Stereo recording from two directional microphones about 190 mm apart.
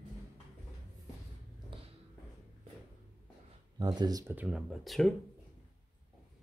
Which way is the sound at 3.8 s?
20° right (ahead or behind).